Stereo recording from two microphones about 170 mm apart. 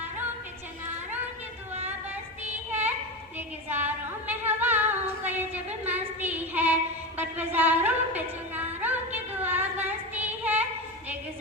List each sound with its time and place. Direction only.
2.4 s child singing: 10° right (ahead or behind)
3.3 s a sound: 10° right (ahead or behind)
7.2 s music: 10° right (ahead or behind)